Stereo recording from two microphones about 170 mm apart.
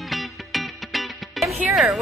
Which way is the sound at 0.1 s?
Centre (ahead or behind).